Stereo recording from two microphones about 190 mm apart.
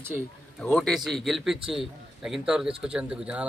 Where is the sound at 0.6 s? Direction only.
Centre (ahead or behind).